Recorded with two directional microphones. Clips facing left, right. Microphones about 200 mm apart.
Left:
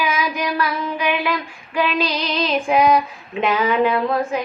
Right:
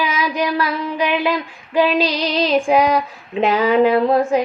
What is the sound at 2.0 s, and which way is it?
Child singing, 40° right (ahead or behind).